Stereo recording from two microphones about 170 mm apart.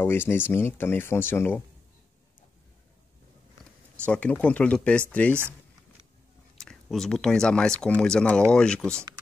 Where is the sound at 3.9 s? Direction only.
5° left (ahead or behind).